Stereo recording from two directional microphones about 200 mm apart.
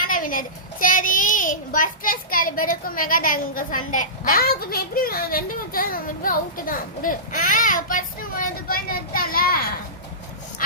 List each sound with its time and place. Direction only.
0.0 s a child's voice: 45° left (ahead or behind)